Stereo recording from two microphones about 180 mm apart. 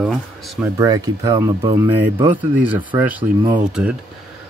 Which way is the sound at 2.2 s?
10° right (ahead or behind).